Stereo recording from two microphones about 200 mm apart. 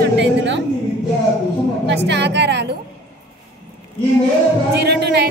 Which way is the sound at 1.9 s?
60° right (ahead or behind).